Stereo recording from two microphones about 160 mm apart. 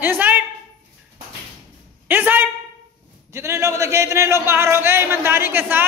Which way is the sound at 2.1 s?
10° right (ahead or behind).